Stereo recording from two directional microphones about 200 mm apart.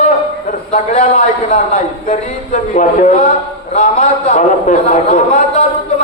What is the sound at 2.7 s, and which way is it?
A man's voice, 35° left (ahead or behind).